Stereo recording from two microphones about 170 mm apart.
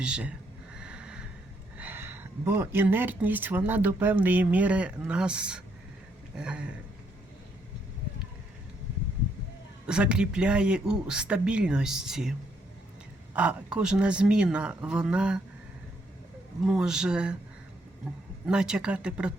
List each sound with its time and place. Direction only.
0.0 s speech: 5° right (ahead or behind)
0.8 s a sound: 5° right (ahead or behind)
1.8 s speech: 10° right (ahead or behind)
9.8 s speech: 5° right (ahead or behind)
13.3 s speech: 5° right (ahead or behind)
16.6 s speech: 5° right (ahead or behind)
18.4 s speech: 5° right (ahead or behind)